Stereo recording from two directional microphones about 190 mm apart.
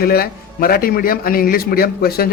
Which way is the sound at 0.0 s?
50° left (ahead or behind).